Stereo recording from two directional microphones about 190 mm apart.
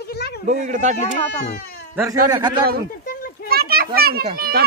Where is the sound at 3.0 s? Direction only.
50° left (ahead or behind).